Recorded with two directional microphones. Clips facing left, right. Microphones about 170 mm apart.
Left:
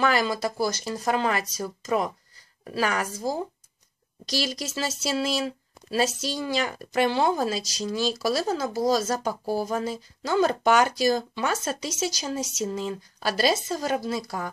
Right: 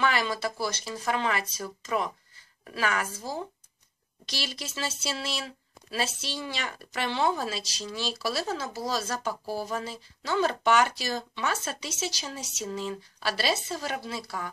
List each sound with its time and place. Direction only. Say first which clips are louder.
0.0 s speech: left 4 dB; 40° left (ahead or behind)